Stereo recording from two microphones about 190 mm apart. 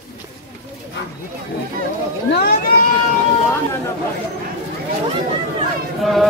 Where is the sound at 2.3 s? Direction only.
60° left (ahead or behind).